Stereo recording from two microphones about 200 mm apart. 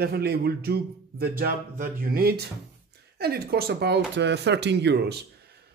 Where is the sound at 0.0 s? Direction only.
50° right (ahead or behind).